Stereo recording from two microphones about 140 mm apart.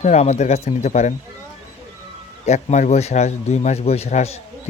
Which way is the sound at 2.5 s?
55° left (ahead or behind).